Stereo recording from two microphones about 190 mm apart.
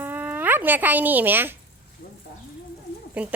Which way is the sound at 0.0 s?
10° right (ahead or behind).